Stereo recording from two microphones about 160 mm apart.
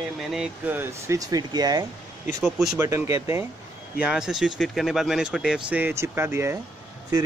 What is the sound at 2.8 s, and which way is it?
Speech, 20° right (ahead or behind).